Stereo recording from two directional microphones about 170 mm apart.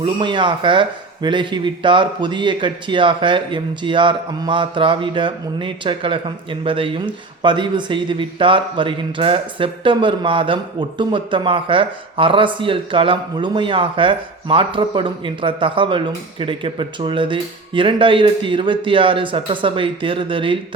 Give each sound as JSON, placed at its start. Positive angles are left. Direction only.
{"t": 0.0, "sound": "a man's voice", "side_deg": -30}